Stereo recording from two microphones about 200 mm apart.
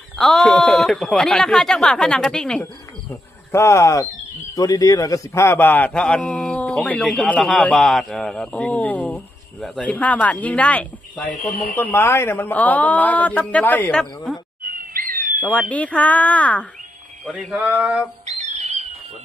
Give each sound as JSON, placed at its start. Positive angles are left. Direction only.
{"t": 0.2, "sound": "a man's voice", "side_deg": 0}
{"t": 14.6, "sound": "owl", "side_deg": -45}
{"t": 15.7, "sound": "a man's voice", "side_deg": 5}
{"t": 17.3, "sound": "a sound", "side_deg": 0}
{"t": 18.2, "sound": "owl", "side_deg": -35}